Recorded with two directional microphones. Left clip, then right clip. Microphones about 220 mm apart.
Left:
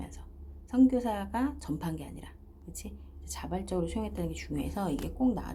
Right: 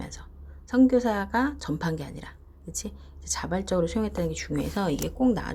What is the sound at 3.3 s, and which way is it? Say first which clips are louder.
A woman's voice: right 8 dB; 15° right (ahead or behind).